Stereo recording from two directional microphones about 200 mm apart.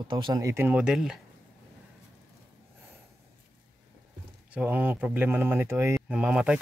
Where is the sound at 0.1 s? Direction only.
20° right (ahead or behind); by 1.2 s 5° right (ahead or behind).